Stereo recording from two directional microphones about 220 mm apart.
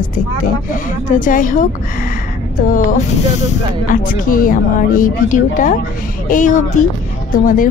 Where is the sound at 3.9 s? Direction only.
40° left (ahead or behind).